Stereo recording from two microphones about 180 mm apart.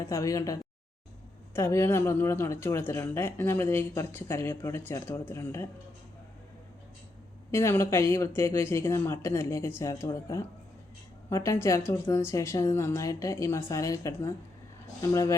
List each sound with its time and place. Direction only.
0.0 s speech: 15° left (ahead or behind)
7.5 s speech: 15° left (ahead or behind)